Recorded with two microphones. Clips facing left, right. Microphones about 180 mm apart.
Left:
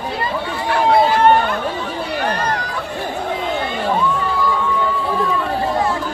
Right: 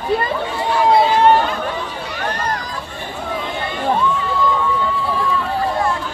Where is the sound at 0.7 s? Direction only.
55° left (ahead or behind).